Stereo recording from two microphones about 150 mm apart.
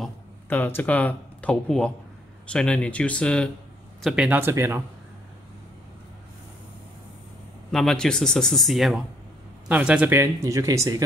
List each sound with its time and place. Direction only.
0.5 s speech: 15° left (ahead or behind)
4.0 s speech: 5° right (ahead or behind)
7.7 s speech: 5° left (ahead or behind); by 11.0 s 20° right (ahead or behind)